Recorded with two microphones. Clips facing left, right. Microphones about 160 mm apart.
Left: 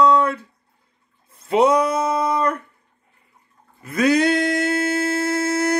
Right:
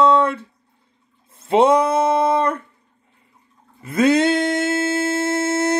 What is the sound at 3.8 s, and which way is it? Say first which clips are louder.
Humming: right 2 dB; 25° right (ahead or behind).